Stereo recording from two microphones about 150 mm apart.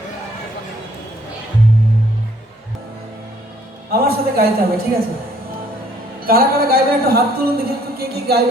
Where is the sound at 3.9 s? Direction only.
90° right.